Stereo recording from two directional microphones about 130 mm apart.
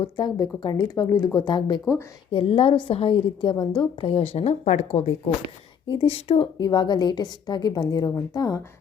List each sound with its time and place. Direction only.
0.2 s a woman's voice: 30° left (ahead or behind); by 6.5 s 50° left (ahead or behind)
6.6 s a woman's voice: 35° left (ahead or behind)